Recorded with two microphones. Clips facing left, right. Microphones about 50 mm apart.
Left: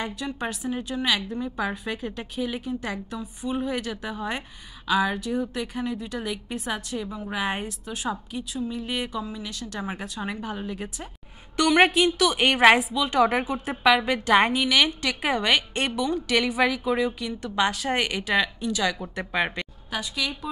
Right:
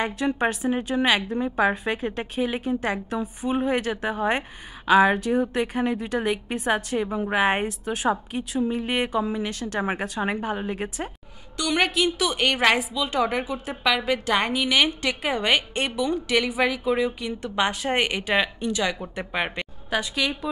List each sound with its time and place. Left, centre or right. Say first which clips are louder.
0.0 s a woman's voice: right 6 dB; right
12.4 s a woman's voice: left 4 dB; centre
14.8 s a woman's voice: right 1 dB; centre
19.1 s speech: left 1 dB; centre